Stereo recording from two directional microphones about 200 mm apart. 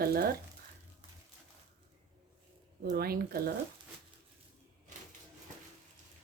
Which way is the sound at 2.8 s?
50° right (ahead or behind).